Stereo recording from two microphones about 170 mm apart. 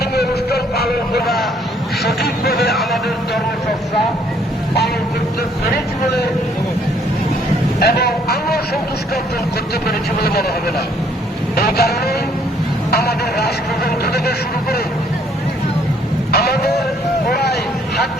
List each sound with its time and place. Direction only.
0.0 s music: 70° left (ahead or behind)
2.0 s speech: 70° left (ahead or behind)
2.7 s speech: centre (ahead or behind)
7.8 s speech: 70° left (ahead or behind)
9.8 s speech: 65° left (ahead or behind)
11.5 s speech: 65° left (ahead or behind)
16.3 s vehicle: 70° left (ahead or behind)